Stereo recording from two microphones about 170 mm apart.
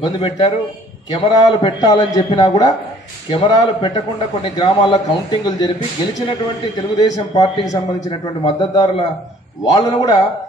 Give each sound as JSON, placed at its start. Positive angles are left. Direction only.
{"t": 0.0, "sound": "a man's voice", "side_deg": 30}
{"t": 1.5, "sound": "a man's voice", "side_deg": 25}
{"t": 7.0, "sound": "a man's voice", "side_deg": 25}
{"t": 8.5, "sound": "a man's voice", "side_deg": 25}